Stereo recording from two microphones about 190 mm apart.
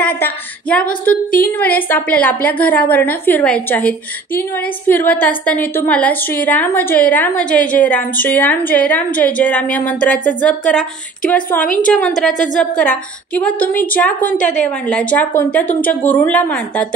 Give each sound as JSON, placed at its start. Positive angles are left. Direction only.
{"t": 0.0, "sound": "a woman's voice", "side_deg": 5}